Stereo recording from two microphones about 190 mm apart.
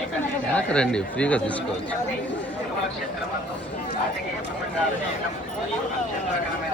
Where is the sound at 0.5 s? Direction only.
5° left (ahead or behind).